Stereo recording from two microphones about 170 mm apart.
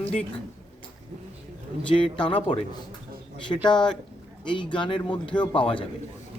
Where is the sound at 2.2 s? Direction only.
30° left (ahead or behind).